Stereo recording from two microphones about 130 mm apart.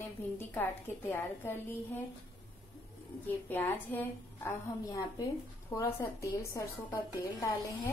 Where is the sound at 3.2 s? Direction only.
15° left (ahead or behind).